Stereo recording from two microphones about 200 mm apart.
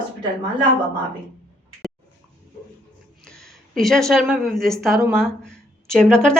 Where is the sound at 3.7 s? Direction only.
Centre (ahead or behind).